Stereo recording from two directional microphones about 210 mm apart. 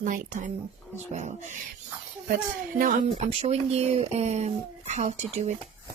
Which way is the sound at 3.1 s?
30° right (ahead or behind).